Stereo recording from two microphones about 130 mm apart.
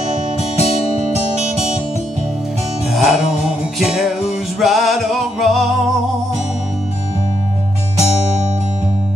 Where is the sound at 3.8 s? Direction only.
5° right (ahead or behind).